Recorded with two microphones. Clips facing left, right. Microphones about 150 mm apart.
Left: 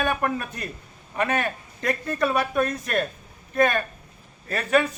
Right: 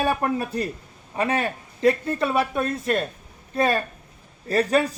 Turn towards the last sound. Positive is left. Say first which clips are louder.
# right 2 dB
turn(degrees=-35)  # may be behind; listen again after turning